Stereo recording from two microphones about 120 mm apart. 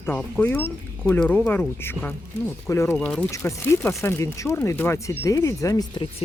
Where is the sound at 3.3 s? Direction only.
20° left (ahead or behind).